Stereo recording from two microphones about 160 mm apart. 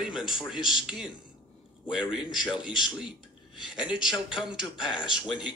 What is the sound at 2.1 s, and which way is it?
Speech, 5° right (ahead or behind).